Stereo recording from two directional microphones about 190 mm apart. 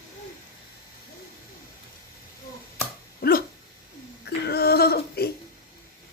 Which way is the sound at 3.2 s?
50° left (ahead or behind).